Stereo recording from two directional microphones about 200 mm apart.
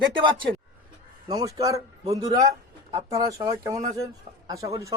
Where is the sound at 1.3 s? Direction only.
15° right (ahead or behind).